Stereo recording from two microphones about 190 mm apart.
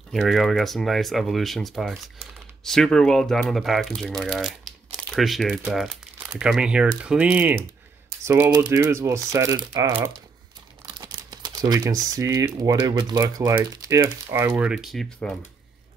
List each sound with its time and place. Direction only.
0.1 s speech: centre (ahead or behind)